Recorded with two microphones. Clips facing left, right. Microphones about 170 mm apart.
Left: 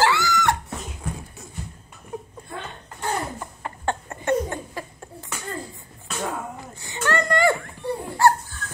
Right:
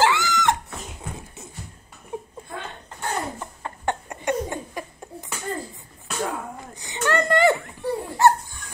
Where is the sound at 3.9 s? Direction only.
15° right (ahead or behind).